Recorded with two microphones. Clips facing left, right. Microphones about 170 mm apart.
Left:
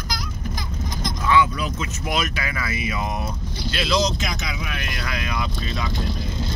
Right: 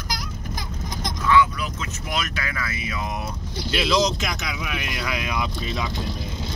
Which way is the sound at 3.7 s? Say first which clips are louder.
Right 1 dB; 5° right (ahead or behind).